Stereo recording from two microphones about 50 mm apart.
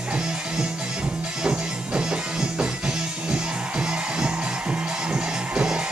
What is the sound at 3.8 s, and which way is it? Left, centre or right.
Music, centre.